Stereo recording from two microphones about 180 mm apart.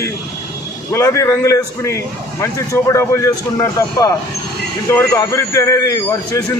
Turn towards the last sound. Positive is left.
turn(degrees=15)  # may be behind; listen again after turning